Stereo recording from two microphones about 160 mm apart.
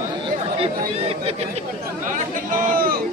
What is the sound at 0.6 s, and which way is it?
Chatter, 40° right (ahead or behind).